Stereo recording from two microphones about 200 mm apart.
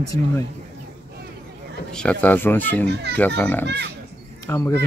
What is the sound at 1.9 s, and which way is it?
Speech, 5° left (ahead or behind).